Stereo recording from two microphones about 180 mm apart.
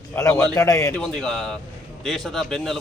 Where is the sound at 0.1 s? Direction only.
20° left (ahead or behind).